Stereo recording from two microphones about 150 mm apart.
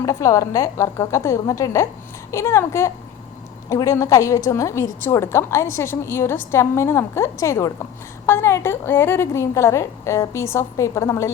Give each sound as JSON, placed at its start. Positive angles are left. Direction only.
{"t": 0.0, "sound": "a woman's voice", "side_deg": 20}